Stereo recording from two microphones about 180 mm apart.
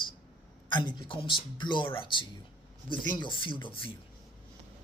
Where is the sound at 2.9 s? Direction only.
25° left (ahead or behind).